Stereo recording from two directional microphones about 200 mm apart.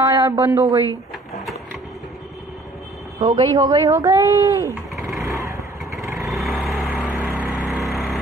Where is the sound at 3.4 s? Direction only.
20° right (ahead or behind).